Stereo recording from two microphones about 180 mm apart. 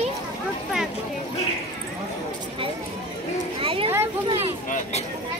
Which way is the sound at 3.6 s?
30° right (ahead or behind).